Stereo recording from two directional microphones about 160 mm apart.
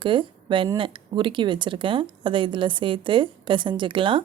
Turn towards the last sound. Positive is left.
turn(degrees=-30)  # may be behind; listen again after turning